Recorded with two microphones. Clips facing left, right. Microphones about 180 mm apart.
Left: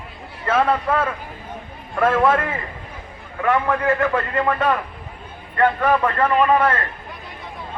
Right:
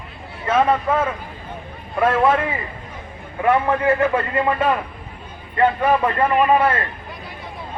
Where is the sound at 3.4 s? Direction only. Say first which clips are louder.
Right 2 dB; 20° right (ahead or behind).